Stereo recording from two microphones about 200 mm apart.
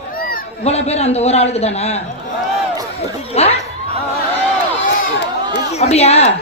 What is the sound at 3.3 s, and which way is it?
Speech, 30° left (ahead or behind).